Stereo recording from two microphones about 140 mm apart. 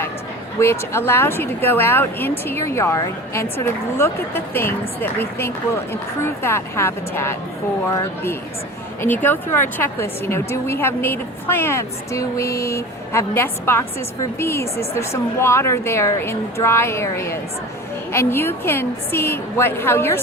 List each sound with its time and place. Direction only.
0.6 s a woman's voice: 20° left (ahead or behind)